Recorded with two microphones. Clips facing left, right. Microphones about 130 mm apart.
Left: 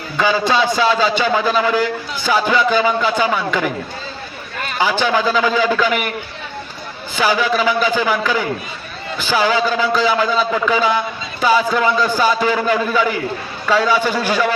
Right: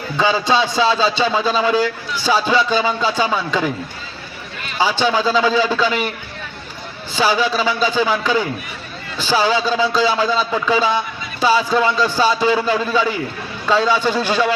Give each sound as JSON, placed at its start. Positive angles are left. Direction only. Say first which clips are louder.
{"t": 0.2, "sound": "a man's voice", "louder": "left 1 dB", "side_deg": -25}
{"t": 4.5, "sound": "a sound", "louder": "left 6 dB", "side_deg": 45}
{"t": 4.8, "sound": "a man's voice", "louder": "even", "side_deg": -30}
{"t": 7.2, "sound": "a man's voice", "louder": "left 1 dB", "side_deg": -30}
{"t": 9.2, "sound": "a man's voice", "louder": "even", "side_deg": -30}